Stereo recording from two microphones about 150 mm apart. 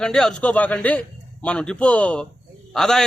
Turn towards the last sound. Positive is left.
turn(degrees=0)  # may be behind; listen again after turning